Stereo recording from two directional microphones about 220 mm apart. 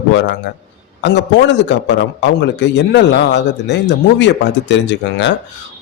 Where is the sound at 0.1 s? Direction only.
55° left (ahead or behind).